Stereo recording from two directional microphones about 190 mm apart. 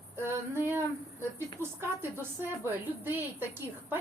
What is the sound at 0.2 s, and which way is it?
Female singing, 10° right (ahead or behind).